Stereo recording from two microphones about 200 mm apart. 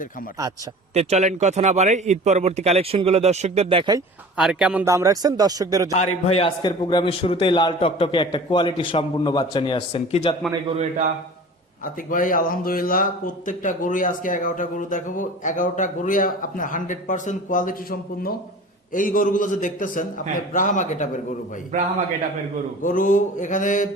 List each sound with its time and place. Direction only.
0.9 s a man's voice: 35° right (ahead or behind)
4.4 s a man's voice: 5° right (ahead or behind)
6.3 s a man's voice: 25° left (ahead or behind)
10.5 s a man's voice: 30° right (ahead or behind)
12.1 s speech: 45° left (ahead or behind)
18.9 s speech: 45° left (ahead or behind)
22.8 s speech: 40° left (ahead or behind)